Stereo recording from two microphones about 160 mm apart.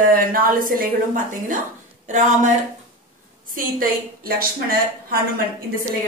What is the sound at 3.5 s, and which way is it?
A woman's voice, 65° right (ahead or behind).